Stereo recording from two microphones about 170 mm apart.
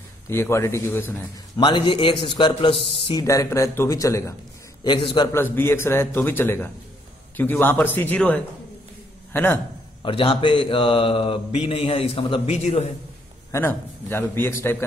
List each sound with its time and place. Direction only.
0.3 s a man's voice: 15° left (ahead or behind)
1.6 s a man's voice: 25° left (ahead or behind)
3.3 s a man's voice: 20° left (ahead or behind)
4.8 s a man's voice: 30° left (ahead or behind)
5.3 s a man's voice: 15° left (ahead or behind)
10.0 s speech: 30° left (ahead or behind)
13.5 s a man's voice: 15° left (ahead or behind)